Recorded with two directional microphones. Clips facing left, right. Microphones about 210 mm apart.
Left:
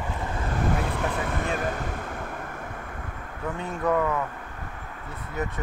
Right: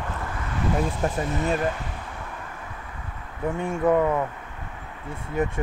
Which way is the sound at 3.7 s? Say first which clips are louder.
Right 4 dB; 25° right (ahead or behind).